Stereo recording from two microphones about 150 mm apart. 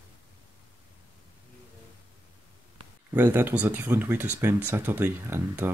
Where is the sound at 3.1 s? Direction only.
15° right (ahead or behind).